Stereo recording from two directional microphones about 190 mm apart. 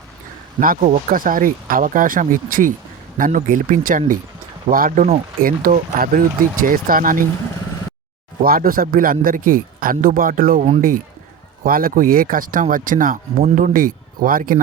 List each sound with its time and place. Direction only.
0.6 s speech: 45° right (ahead or behind)
8.4 s speech: 50° right (ahead or behind)